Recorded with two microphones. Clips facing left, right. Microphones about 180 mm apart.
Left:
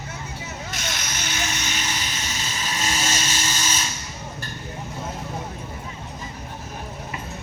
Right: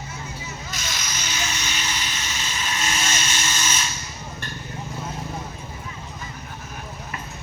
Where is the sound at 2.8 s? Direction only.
35° left (ahead or behind).